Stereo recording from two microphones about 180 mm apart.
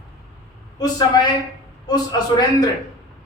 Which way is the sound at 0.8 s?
20° left (ahead or behind).